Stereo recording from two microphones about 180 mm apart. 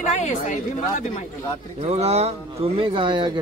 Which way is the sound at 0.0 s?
40° left (ahead or behind).